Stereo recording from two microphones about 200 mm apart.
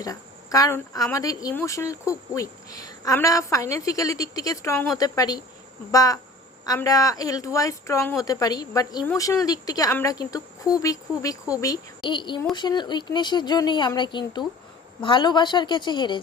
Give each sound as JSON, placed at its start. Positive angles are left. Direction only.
{"t": 0.0, "sound": "speech", "side_deg": 15}